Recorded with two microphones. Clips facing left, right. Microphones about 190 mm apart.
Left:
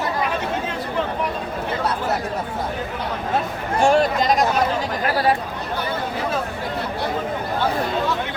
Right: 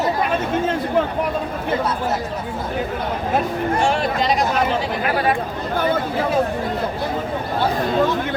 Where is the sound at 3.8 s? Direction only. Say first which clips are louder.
Left 7 dB; 45° left (ahead or behind).